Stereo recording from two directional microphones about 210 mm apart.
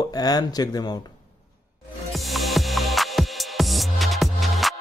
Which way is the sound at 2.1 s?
Centre (ahead or behind).